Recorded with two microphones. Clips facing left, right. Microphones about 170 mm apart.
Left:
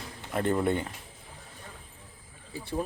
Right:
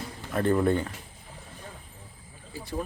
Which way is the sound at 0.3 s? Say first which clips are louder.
Right 3 dB; 20° left (ahead or behind).